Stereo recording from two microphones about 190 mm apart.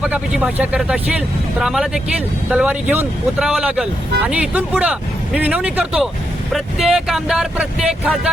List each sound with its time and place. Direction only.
0.0 s speech: 5° right (ahead or behind)